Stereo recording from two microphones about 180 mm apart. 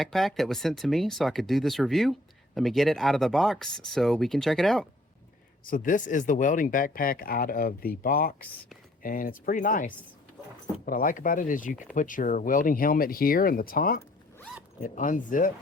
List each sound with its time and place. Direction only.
0.0 s speech: centre (ahead or behind)
5.6 s speech: 50° left (ahead or behind)